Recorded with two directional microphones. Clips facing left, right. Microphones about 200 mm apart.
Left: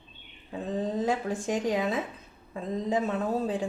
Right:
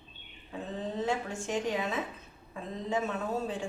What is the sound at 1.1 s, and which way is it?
Speech, 35° left (ahead or behind).